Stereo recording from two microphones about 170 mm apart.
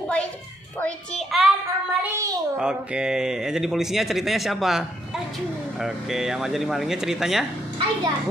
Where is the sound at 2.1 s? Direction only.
20° right (ahead or behind).